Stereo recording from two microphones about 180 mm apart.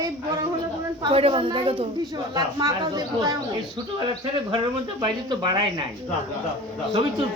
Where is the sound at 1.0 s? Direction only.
30° right (ahead or behind).